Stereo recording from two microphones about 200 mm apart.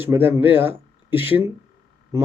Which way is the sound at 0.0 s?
10° right (ahead or behind).